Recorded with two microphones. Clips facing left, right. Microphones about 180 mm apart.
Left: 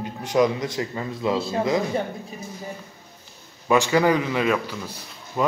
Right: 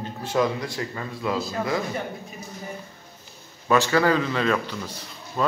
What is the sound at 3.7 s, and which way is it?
Speech, 15° left (ahead or behind).